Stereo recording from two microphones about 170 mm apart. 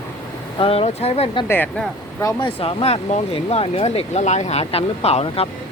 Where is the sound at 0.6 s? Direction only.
35° left (ahead or behind).